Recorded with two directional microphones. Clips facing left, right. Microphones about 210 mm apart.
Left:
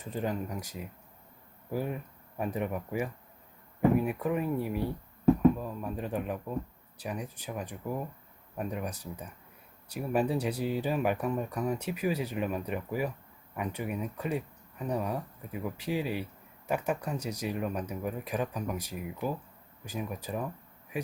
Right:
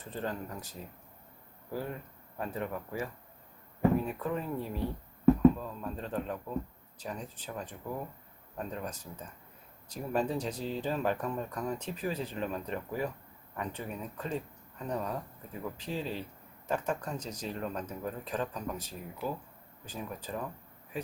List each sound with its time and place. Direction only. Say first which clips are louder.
0.0 s speech: left 4 dB; 15° left (ahead or behind)